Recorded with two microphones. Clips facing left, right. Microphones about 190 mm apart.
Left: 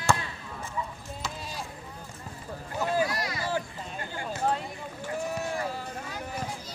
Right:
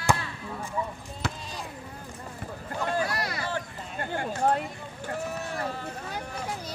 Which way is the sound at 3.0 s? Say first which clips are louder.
Even; 60° right (ahead or behind).